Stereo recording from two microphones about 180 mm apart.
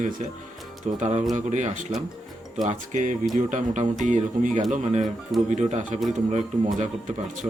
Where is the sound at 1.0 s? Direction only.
40° right (ahead or behind).